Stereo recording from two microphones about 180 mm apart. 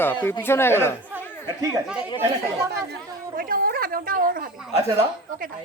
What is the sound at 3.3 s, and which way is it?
Speech, 55° right (ahead or behind).